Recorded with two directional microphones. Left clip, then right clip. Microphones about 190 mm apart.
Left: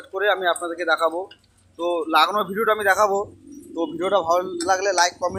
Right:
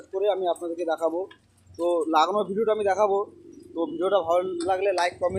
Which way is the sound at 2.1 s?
15° right (ahead or behind).